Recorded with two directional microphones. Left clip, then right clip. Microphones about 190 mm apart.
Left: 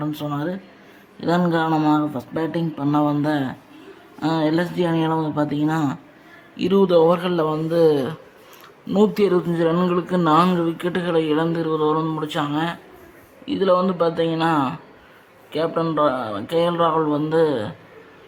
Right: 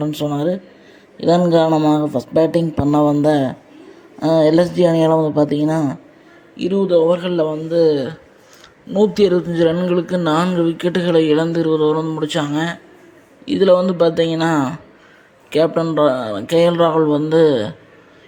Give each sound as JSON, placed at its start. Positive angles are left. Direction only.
{"t": 0.0, "sound": "speech", "side_deg": -15}
{"t": 6.6, "sound": "speech", "side_deg": 10}
{"t": 7.2, "sound": "a man's voice", "side_deg": 0}
{"t": 9.0, "sound": "speech", "side_deg": -10}
{"t": 10.2, "sound": "a man's voice", "side_deg": 0}
{"t": 10.6, "sound": "speech", "side_deg": -15}